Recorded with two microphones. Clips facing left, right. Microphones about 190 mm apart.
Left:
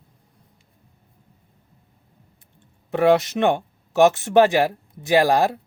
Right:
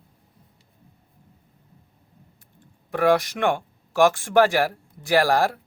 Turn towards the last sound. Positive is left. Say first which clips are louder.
# left 2 dB
turn(degrees=20)  # may be behind; listen again after turning